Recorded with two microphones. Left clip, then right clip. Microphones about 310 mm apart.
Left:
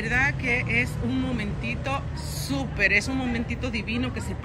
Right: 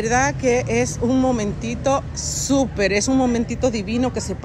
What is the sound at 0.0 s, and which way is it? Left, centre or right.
Speech, centre.